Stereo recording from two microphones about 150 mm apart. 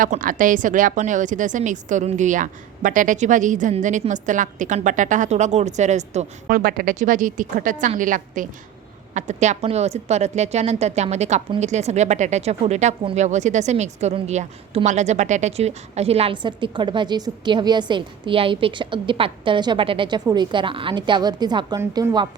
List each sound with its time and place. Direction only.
0.0 s a woman's voice: 65° right (ahead or behind)
6.5 s a woman's voice: 80° right; by 21.8 s 30° right (ahead or behind)
21.8 s a woman's voice: 20° right (ahead or behind)